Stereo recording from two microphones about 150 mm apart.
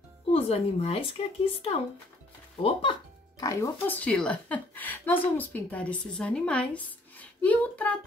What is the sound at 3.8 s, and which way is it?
Speech, 10° left (ahead or behind).